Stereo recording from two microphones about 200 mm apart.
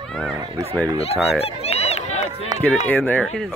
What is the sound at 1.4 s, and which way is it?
Run, 30° left (ahead or behind).